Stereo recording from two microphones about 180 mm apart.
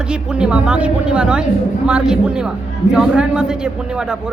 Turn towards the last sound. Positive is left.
turn(degrees=-5)  # may be behind; listen again after turning